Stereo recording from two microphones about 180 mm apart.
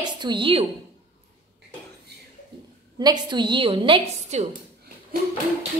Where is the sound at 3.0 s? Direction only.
25° right (ahead or behind).